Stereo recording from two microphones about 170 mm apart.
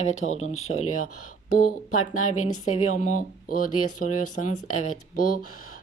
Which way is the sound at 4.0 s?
50° left (ahead or behind).